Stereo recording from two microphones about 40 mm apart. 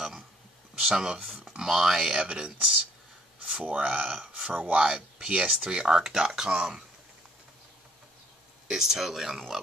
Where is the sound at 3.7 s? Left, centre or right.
Right.